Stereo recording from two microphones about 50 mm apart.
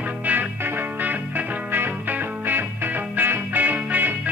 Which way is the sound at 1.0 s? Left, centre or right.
Right.